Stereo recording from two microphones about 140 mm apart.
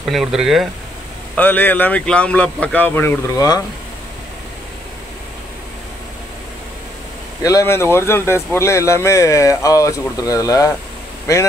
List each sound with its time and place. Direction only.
0.0 s speech: 5° right (ahead or behind)
1.3 s speech: 10° left (ahead or behind)
7.4 s speech: 20° left (ahead or behind)